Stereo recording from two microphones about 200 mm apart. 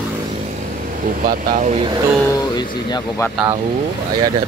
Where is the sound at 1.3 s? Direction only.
35° right (ahead or behind).